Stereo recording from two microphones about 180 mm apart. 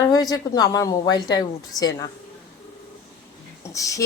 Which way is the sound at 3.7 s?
20° left (ahead or behind).